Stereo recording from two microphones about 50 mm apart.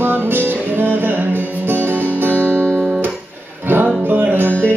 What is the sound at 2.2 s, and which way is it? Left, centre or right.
Music, right.